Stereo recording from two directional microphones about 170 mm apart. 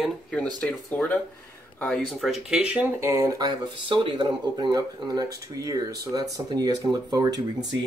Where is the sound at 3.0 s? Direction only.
15° right (ahead or behind).